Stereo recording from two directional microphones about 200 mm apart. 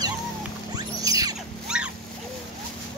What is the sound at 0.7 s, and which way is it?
Music, 20° right (ahead or behind).